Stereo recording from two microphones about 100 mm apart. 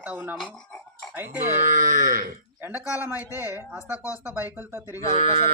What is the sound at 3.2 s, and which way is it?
Speech, 30° left (ahead or behind).